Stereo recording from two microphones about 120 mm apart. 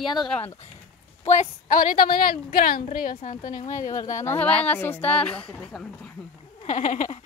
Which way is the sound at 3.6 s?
25° left (ahead or behind).